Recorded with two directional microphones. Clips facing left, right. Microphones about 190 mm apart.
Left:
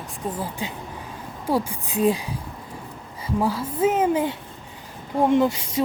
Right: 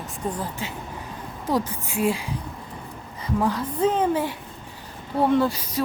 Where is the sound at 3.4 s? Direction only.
10° left (ahead or behind).